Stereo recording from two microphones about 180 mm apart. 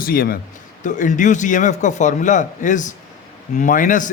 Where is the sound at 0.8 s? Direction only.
45° left (ahead or behind).